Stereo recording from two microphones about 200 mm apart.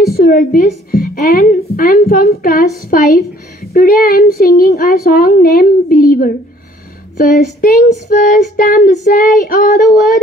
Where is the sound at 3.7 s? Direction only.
50° left (ahead or behind).